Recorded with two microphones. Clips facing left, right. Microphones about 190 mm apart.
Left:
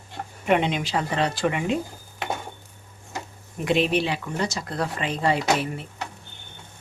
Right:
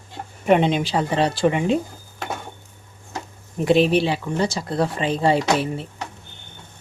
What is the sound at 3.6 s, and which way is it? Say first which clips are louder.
Speech: right 5 dB; 35° right (ahead or behind).